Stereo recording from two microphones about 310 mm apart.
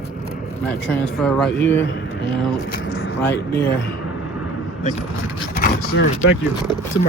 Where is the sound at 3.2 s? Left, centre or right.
Left.